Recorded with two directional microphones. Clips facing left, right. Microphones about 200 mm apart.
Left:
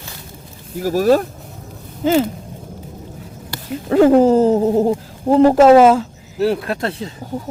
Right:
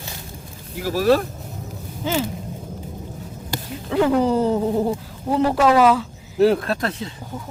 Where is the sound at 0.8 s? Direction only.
45° left (ahead or behind).